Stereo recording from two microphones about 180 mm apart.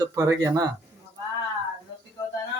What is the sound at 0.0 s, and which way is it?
Speech, 15° right (ahead or behind).